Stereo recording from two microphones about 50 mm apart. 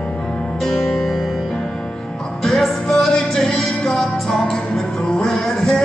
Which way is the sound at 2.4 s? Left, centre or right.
Centre.